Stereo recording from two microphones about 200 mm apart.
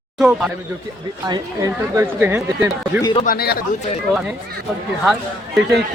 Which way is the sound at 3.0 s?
25° left (ahead or behind).